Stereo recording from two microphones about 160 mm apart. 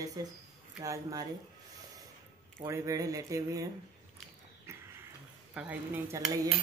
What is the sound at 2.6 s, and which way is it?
Speech, 20° right (ahead or behind).